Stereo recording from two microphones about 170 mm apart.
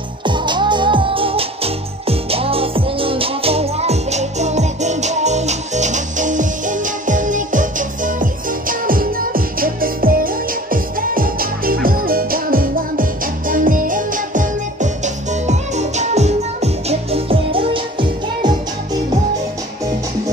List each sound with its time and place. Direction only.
0.2 s music: 30° right (ahead or behind)